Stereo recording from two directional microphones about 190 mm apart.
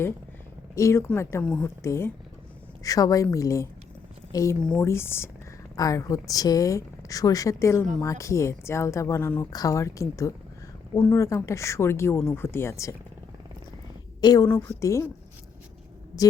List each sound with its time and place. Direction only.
0.8 s a woman's voice: 15° left (ahead or behind)
14.2 s a woman's voice: 20° left (ahead or behind)